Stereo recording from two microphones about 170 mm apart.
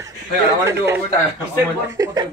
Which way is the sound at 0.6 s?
15° right (ahead or behind).